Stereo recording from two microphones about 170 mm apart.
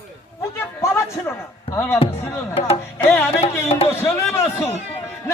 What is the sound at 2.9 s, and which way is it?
A man's voice, 10° left (ahead or behind).